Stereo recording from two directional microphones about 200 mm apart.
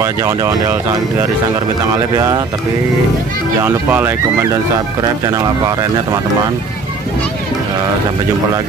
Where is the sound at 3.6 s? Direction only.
10° right (ahead or behind).